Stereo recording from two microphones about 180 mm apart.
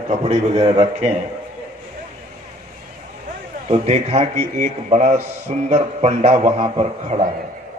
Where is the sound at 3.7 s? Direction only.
35° right (ahead or behind).